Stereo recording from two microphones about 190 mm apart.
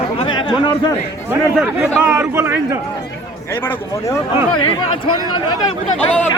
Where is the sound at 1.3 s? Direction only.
5° right (ahead or behind).